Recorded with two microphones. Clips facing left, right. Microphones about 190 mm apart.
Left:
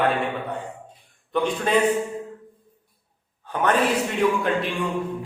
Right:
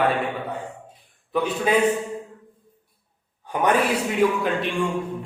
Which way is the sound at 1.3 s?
5° right (ahead or behind).